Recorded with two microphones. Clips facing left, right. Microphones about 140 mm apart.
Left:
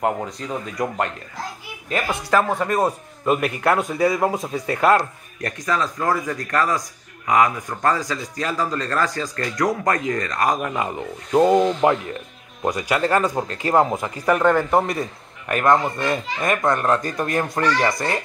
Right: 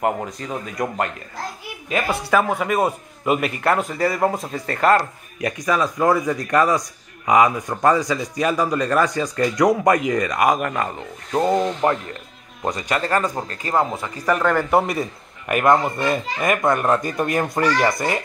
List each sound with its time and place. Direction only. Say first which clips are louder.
0.0 s a man's voice: right 1 dB; centre (ahead or behind)
5.4 s a man's voice: right 3 dB; 15° right (ahead or behind)
10.6 s a man's voice: even; 5° left (ahead or behind)
14.3 s a man's voice: left 1 dB; 5° left (ahead or behind)